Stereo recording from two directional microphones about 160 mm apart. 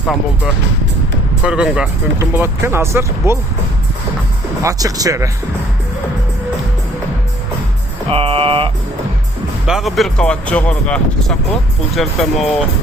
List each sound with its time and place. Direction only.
0.0 s speech: centre (ahead or behind); by 3.3 s 15° right (ahead or behind)
4.6 s speech: 20° right (ahead or behind)
8.1 s music: 35° right (ahead or behind)
9.6 s speech: centre (ahead or behind)